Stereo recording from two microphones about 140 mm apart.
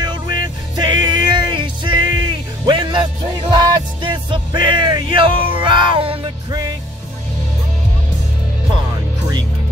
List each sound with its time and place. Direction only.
0.0 s music: 30° right (ahead or behind)